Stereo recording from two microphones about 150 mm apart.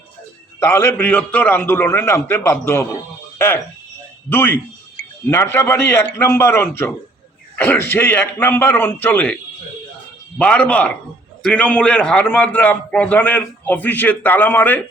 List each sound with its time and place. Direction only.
0.6 s a man's voice: 15° left (ahead or behind)